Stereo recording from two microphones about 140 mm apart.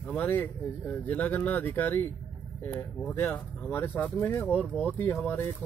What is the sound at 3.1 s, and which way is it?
Speech, 10° left (ahead or behind).